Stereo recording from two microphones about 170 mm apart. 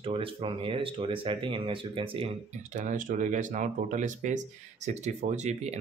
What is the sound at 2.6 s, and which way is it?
Speech, 45° right (ahead or behind).